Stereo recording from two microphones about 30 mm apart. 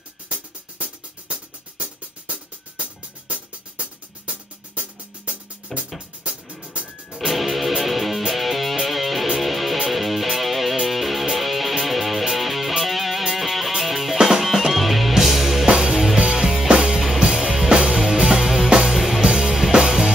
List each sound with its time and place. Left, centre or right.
0.3 s music: right
5.7 s music: centre
7.1 s music: centre
15.6 s music: right
17.4 s music: centre
17.6 s music: right